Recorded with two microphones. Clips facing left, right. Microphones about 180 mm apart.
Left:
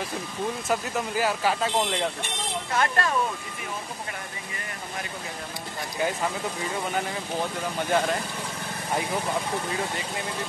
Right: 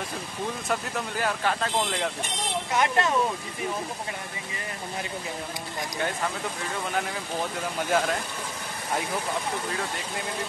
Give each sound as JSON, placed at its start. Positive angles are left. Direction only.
{"t": 0.7, "sound": "speech", "side_deg": 5}
{"t": 2.7, "sound": "speech", "side_deg": -20}
{"t": 7.9, "sound": "speech", "side_deg": -5}